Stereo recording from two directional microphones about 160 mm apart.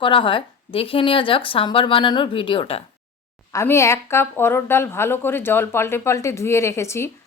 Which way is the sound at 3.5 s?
15° left (ahead or behind).